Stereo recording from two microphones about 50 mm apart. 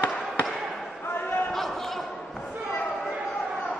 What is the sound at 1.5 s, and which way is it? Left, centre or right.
Basketball bounce, centre.